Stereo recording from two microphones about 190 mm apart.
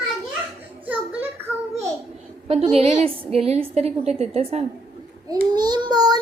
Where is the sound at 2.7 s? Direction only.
35° right (ahead or behind).